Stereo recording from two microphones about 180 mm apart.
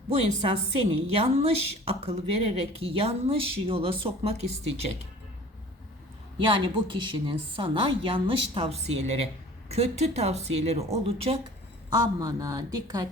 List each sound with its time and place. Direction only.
0.1 s speech: 35° right (ahead or behind)
6.4 s a woman's voice: 25° right (ahead or behind)
11.9 s a woman's voice: 20° right (ahead or behind)